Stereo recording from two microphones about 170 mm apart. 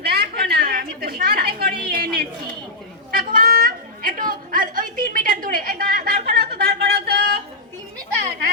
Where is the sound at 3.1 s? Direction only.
60° right (ahead or behind).